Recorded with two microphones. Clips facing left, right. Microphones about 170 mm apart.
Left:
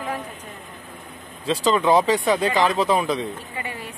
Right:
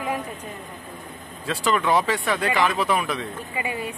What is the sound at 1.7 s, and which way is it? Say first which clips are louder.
Speech: left 3 dB; 20° left (ahead or behind).